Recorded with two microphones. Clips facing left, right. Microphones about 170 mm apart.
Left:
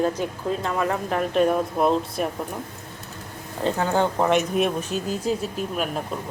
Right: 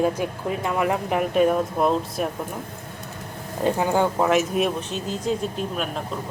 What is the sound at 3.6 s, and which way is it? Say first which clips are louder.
A woman's voice: right 1 dB; 15° right (ahead or behind).